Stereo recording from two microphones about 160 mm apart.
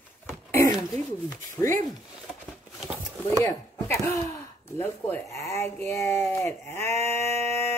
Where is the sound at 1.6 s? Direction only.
10° left (ahead or behind).